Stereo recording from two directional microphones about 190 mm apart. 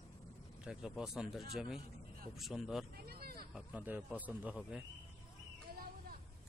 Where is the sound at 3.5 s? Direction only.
5° right (ahead or behind).